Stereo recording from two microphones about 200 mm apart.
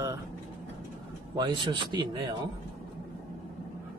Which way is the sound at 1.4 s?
20° right (ahead or behind).